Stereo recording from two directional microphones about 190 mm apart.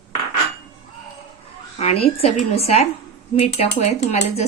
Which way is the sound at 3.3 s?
35° left (ahead or behind).